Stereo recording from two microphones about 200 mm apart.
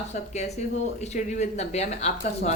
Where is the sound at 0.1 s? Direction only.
35° left (ahead or behind).